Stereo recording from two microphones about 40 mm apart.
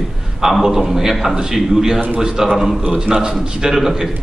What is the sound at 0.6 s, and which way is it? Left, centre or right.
A man's voice, centre.